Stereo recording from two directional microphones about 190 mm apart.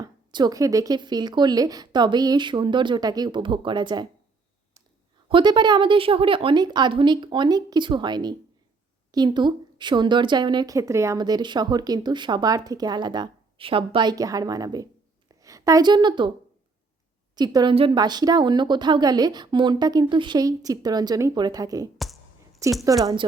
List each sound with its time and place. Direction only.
0.0 s a woman's voice: 20° right (ahead or behind)
5.3 s a woman's voice: 25° right (ahead or behind)
17.3 s a woman's voice: 20° right (ahead or behind)
21.9 s a sound: centre (ahead or behind)
22.9 s a woman's voice: 20° right (ahead or behind)